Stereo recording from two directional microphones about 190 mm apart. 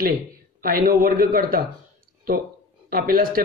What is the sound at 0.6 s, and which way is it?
A man's voice, 50° right (ahead or behind).